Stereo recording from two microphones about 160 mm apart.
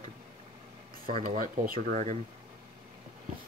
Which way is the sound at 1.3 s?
55° right (ahead or behind).